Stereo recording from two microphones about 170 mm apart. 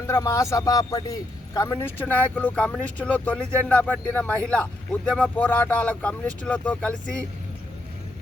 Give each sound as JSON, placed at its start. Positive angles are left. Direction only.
{"t": 0.1, "sound": "a man's voice", "side_deg": 20}